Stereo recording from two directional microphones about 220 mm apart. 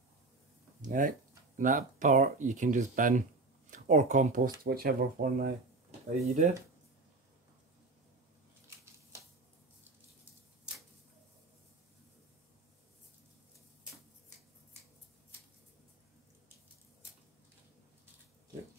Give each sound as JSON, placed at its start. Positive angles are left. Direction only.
{"t": 0.8, "sound": "speech", "side_deg": -40}
{"t": 5.9, "sound": "speech", "side_deg": -30}